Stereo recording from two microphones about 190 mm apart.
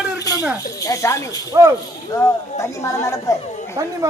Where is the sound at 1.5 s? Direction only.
20° right (ahead or behind).